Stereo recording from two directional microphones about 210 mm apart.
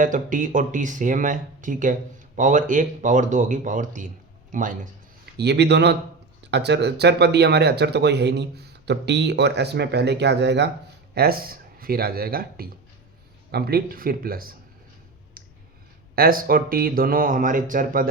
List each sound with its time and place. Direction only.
0.0 s speech: 40° right (ahead or behind)
5.4 s speech: 55° right (ahead or behind)
15.4 s clicking: 45° right (ahead or behind)
16.1 s speech: 45° right (ahead or behind)